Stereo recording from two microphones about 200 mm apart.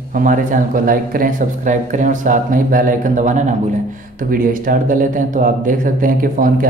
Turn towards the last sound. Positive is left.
turn(degrees=-45)  # may be behind; listen again after turning